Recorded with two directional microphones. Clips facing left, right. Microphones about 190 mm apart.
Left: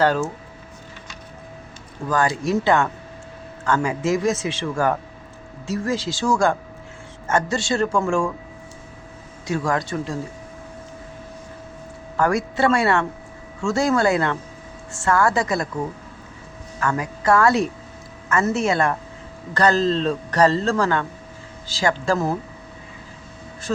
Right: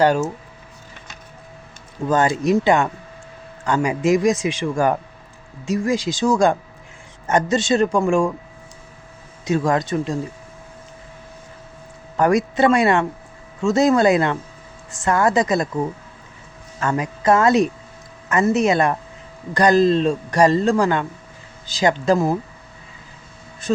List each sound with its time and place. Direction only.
0.0 s a man's voice: 15° right (ahead or behind)
2.0 s a man's voice: 20° right (ahead or behind)
9.5 s speech: 20° right (ahead or behind)
12.1 s speech: 20° right (ahead or behind)
16.8 s a man's voice: 20° right (ahead or behind)